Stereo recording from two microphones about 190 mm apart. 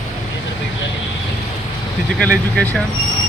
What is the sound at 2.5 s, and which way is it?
Speech, 5° left (ahead or behind).